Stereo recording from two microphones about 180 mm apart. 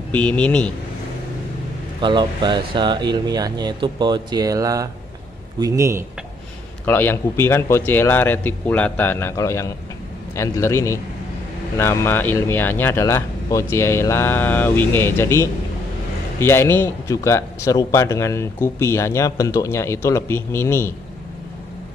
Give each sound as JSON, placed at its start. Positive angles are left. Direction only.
{"t": 0.1, "sound": "speech", "side_deg": 5}
{"t": 2.0, "sound": "speech", "side_deg": -25}
{"t": 6.9, "sound": "speech", "side_deg": 10}